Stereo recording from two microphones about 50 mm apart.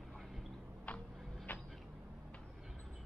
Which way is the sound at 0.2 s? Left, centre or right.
Centre.